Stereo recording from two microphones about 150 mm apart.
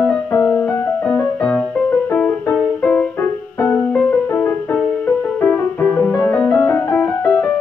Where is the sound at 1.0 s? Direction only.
5° left (ahead or behind).